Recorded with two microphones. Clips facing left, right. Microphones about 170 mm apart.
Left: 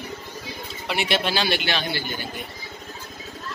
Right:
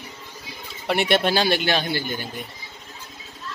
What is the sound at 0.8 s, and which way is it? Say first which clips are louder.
A man's voice: right 4 dB; 55° right (ahead or behind).